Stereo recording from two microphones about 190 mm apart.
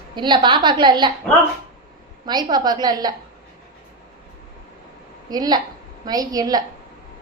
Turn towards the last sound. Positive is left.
turn(degrees=-20)  # may be behind; listen again after turning